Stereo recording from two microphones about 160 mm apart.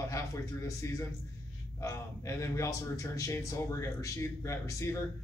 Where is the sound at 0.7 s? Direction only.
20° left (ahead or behind).